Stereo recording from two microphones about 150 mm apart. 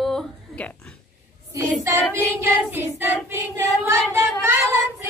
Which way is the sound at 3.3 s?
15° right (ahead or behind).